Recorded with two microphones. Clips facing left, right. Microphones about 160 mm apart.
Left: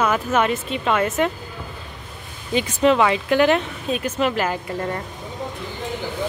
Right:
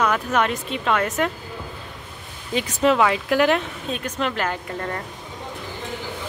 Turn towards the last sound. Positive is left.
turn(degrees=5)  # may be behind; listen again after turning